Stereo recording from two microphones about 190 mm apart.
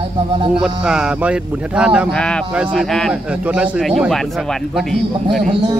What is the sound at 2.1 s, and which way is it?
Speech, 5° left (ahead or behind).